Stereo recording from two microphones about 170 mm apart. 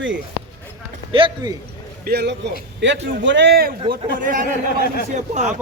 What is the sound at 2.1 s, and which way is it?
Speech, 70° right (ahead or behind).